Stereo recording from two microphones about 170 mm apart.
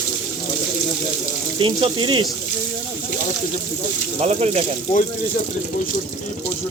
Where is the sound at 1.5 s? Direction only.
30° right (ahead or behind).